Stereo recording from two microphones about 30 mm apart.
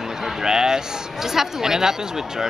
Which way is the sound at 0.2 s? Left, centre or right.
Centre.